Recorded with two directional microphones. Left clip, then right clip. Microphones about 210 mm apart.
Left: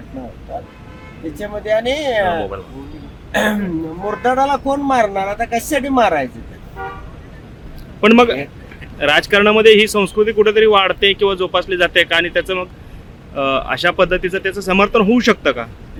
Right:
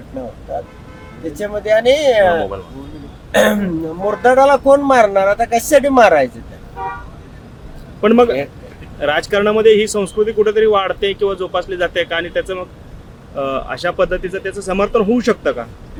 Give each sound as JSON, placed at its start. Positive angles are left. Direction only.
{"t": 1.4, "sound": "speech", "side_deg": -5}
{"t": 8.0, "sound": "speech", "side_deg": 25}